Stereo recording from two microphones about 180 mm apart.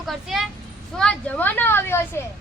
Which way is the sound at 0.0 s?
Centre (ahead or behind).